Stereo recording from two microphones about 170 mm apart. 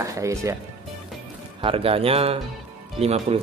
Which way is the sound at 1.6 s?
35° right (ahead or behind).